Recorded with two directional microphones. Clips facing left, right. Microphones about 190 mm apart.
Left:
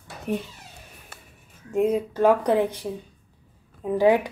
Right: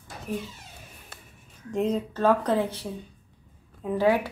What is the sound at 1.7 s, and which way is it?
Speech, 10° left (ahead or behind).